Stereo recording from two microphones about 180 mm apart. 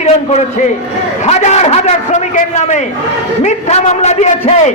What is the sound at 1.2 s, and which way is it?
A man's voice, 40° left (ahead or behind).